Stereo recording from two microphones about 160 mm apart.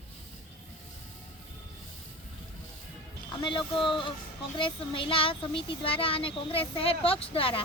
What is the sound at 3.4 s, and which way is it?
A child's voice, 30° left (ahead or behind).